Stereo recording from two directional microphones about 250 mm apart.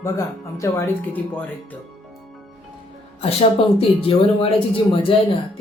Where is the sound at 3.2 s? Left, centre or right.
Left.